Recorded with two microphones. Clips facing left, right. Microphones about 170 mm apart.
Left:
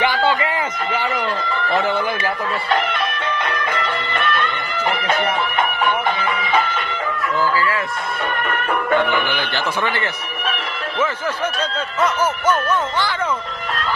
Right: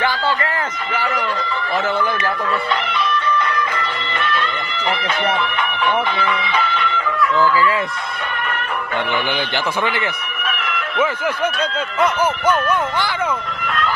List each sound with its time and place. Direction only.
2.8 s music: 50° left (ahead or behind)
8.9 s music: 55° left (ahead or behind)
10.7 s music: 35° left (ahead or behind)